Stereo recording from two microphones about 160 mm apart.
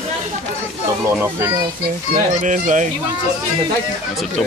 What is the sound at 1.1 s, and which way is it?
Speech, 15° right (ahead or behind).